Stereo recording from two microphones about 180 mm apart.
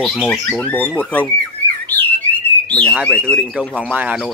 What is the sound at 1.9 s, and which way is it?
Bird, 10° left (ahead or behind).